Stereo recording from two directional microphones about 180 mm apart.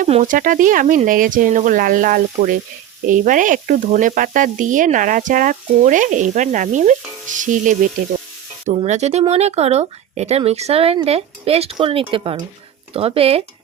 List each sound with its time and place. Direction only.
0.0 s speech: 45° right (ahead or behind)